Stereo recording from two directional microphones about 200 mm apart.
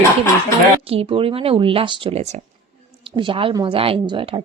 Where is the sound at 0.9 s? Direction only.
30° right (ahead or behind).